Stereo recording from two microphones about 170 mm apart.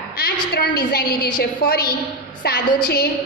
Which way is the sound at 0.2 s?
65° left (ahead or behind).